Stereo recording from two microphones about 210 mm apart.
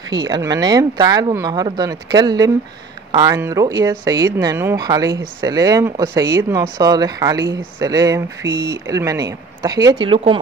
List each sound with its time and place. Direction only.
0.1 s speech: 20° right (ahead or behind)